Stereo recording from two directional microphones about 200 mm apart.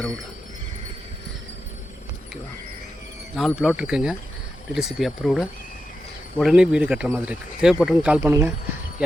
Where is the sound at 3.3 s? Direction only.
Centre (ahead or behind).